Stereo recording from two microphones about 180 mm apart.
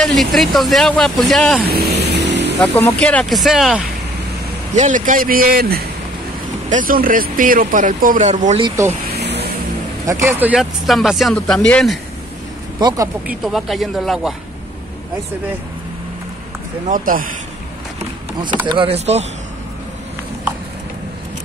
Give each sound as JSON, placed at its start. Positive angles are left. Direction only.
{"t": 0.0, "sound": "speech", "side_deg": 0}
{"t": 1.6, "sound": "vehicle", "side_deg": -60}
{"t": 2.6, "sound": "speech", "side_deg": 10}
{"t": 4.7, "sound": "speech", "side_deg": -45}
{"t": 8.6, "sound": "speech", "side_deg": -15}
{"t": 9.1, "sound": "vehicle", "side_deg": -65}
{"t": 10.0, "sound": "speech", "side_deg": -15}
{"t": 12.7, "sound": "speech", "side_deg": -20}
{"t": 13.3, "sound": "speech", "side_deg": 0}
{"t": 16.8, "sound": "speech", "side_deg": -50}
{"t": 18.7, "sound": "speech", "side_deg": -30}